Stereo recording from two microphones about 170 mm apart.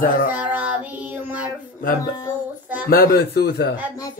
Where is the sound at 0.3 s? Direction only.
10° right (ahead or behind).